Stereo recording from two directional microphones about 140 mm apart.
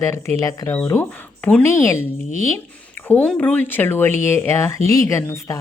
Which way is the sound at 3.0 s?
10° left (ahead or behind).